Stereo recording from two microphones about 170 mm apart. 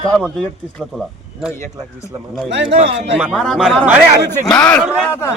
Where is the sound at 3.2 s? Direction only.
Centre (ahead or behind); by 5.3 s 15° left (ahead or behind).